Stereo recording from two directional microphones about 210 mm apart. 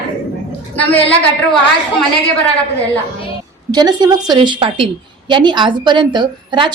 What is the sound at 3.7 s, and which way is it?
A woman's voice, 20° right (ahead or behind).